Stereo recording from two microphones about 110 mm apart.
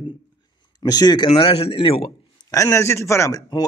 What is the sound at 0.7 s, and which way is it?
Speech, 35° left (ahead or behind).